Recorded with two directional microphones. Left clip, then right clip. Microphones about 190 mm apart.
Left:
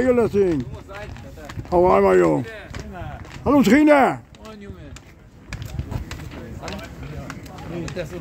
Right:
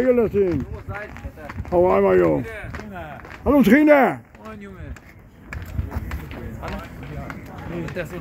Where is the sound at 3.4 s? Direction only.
Centre (ahead or behind).